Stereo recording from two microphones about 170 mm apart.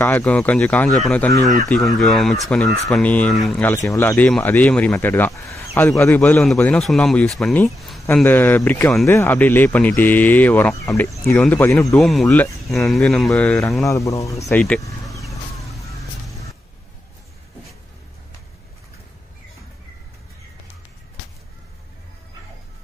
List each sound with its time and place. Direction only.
0.0 s speech: 10° left (ahead or behind)
3.7 s speech: 15° left (ahead or behind)
13.8 s speech: 20° left (ahead or behind)